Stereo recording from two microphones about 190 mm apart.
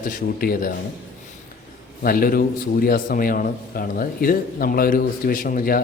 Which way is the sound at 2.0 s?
50° left (ahead or behind).